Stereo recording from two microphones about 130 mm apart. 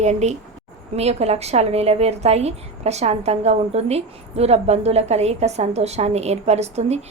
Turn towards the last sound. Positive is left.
turn(degrees=-55)  # may be behind; listen again after turning